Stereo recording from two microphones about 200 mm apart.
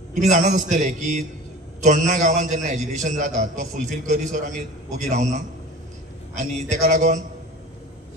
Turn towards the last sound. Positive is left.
turn(degrees=-35)  # may be behind; listen again after turning